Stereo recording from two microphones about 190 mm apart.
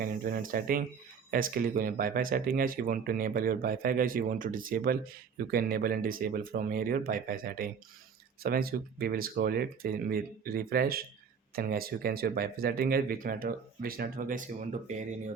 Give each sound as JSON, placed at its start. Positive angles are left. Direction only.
{"t": 0.0, "sound": "speech", "side_deg": -45}